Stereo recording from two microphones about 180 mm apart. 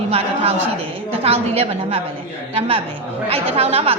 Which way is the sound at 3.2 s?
35° right (ahead or behind).